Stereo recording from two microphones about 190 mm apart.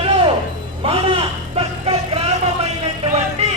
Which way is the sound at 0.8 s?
30° right (ahead or behind).